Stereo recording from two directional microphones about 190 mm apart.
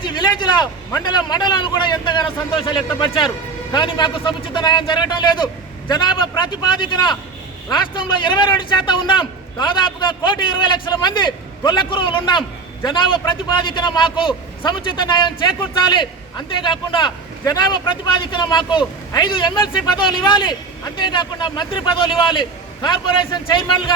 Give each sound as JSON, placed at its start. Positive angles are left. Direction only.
{"t": 0.0, "sound": "a sound", "side_deg": 25}
{"t": 0.9, "sound": "a man's voice", "side_deg": 20}
{"t": 16.6, "sound": "a man's voice", "side_deg": 25}